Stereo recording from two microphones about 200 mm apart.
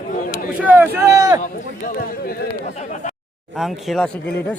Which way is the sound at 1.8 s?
50° left (ahead or behind).